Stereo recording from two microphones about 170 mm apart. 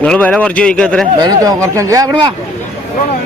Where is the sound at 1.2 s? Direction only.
20° right (ahead or behind).